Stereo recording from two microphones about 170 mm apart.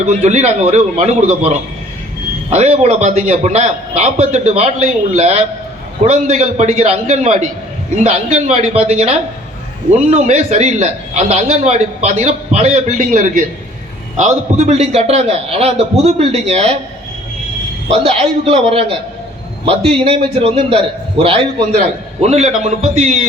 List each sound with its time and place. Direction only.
0.0 s a man's voice: 45° right (ahead or behind)
17.9 s a man's voice: 35° right (ahead or behind)